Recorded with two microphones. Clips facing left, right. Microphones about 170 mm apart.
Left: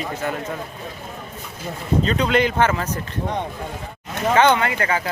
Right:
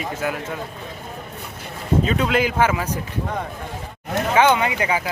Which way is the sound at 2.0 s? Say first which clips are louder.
Left 1 dB; 5° right (ahead or behind).